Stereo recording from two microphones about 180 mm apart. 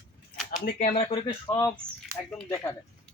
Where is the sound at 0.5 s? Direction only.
50° left (ahead or behind).